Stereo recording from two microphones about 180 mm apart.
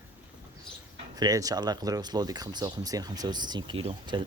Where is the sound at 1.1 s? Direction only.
20° right (ahead or behind).